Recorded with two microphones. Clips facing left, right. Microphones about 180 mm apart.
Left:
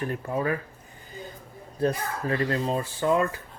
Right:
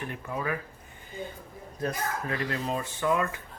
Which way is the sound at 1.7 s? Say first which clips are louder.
Left 5 dB; 35° left (ahead or behind).